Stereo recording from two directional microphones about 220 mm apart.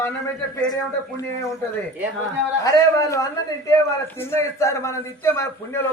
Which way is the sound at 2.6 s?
15° left (ahead or behind).